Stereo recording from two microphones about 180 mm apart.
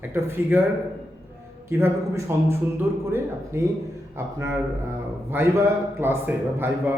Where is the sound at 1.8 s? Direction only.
15° right (ahead or behind).